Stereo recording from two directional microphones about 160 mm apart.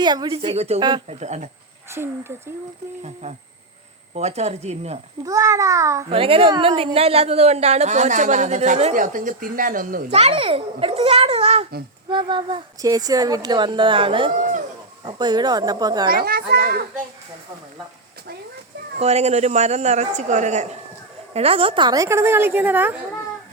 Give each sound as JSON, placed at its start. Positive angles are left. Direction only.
{"t": 0.0, "sound": "a child's voice", "side_deg": -25}
{"t": 0.8, "sound": "a woman's voice", "side_deg": -30}
{"t": 1.0, "sound": "a woman's voice", "side_deg": -45}
{"t": 1.9, "sound": "a woman's voice", "side_deg": -15}
{"t": 4.1, "sound": "a woman's voice", "side_deg": -45}
{"t": 5.2, "sound": "a woman's voice", "side_deg": -20}
{"t": 6.1, "sound": "a child's voice", "side_deg": -35}
{"t": 10.1, "sound": "a child's voice", "side_deg": -40}
{"t": 16.0, "sound": "a child's voice", "side_deg": -70}
{"t": 18.9, "sound": "a woman's voice", "side_deg": -40}
{"t": 21.3, "sound": "a woman's voice", "side_deg": -35}